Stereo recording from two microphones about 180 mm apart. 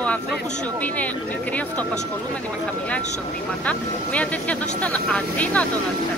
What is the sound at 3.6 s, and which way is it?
Speech, 10° left (ahead or behind).